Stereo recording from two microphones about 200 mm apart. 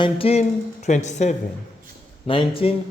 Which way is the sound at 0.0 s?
30° left (ahead or behind).